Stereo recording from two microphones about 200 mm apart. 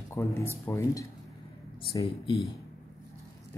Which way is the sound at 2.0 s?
25° left (ahead or behind).